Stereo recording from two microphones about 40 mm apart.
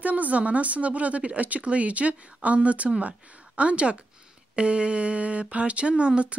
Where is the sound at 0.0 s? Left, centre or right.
Right.